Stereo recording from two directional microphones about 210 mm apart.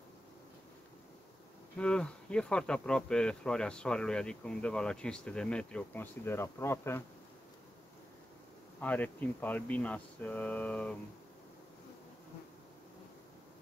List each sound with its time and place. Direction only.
1.8 s speech: 5° left (ahead or behind)
8.8 s speech: 5° left (ahead or behind)